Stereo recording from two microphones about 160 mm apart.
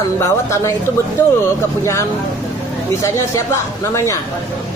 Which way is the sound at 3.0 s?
15° left (ahead or behind).